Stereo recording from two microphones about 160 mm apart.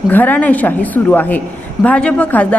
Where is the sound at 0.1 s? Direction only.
10° left (ahead or behind).